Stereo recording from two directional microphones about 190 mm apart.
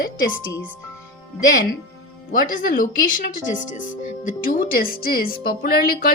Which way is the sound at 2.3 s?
45° left (ahead or behind).